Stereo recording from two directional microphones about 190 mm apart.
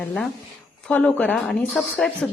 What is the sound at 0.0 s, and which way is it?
A woman's voice, 5° left (ahead or behind).